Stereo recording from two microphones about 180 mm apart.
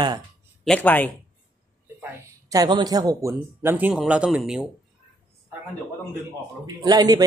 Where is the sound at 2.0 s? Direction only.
20° right (ahead or behind); by 4.7 s 5° right (ahead or behind).